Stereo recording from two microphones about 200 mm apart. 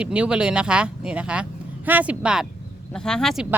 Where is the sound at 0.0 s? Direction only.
5° right (ahead or behind).